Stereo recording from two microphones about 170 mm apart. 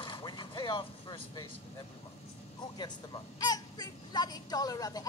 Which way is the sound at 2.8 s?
25° left (ahead or behind).